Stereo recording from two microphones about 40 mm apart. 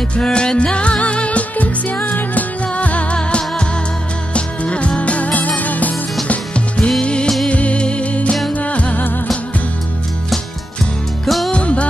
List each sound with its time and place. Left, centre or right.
0.1 s music: left
3.2 s music: left
6.2 s music: left
11.2 s music: centre
11.5 s music: left